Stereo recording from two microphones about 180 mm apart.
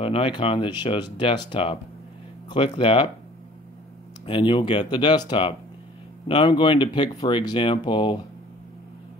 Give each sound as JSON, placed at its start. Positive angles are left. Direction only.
{"t": 0.0, "sound": "speech", "side_deg": 30}
{"t": 4.3, "sound": "speech", "side_deg": 30}